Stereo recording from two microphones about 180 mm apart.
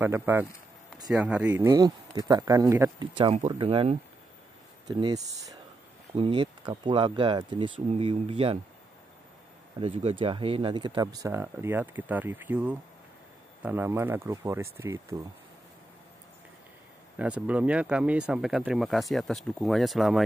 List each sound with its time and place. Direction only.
0.0 s speech: 10° right (ahead or behind); by 4.0 s 35° right (ahead or behind)
4.8 s speech: 20° right (ahead or behind)
9.8 s speech: 30° right (ahead or behind); by 15.1 s 15° right (ahead or behind)
17.2 s speech: 5° right (ahead or behind)